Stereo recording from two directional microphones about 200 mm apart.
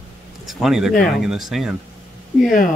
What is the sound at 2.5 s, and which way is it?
Speech, 40° left (ahead or behind).